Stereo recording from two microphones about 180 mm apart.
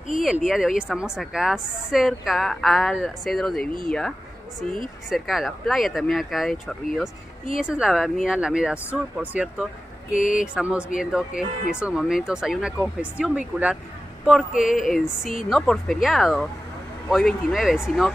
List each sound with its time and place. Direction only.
0.1 s a woman's voice: centre (ahead or behind)
5.1 s a woman's voice: centre (ahead or behind)
10.1 s a sound: 45° left (ahead or behind)
10.4 s a woman's voice: 5° right (ahead or behind)
14.5 s a sound: 45° left (ahead or behind)
14.9 s a woman's voice: centre (ahead or behind)